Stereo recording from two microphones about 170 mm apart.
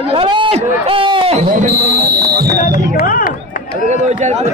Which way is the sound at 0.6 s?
30° right (ahead or behind).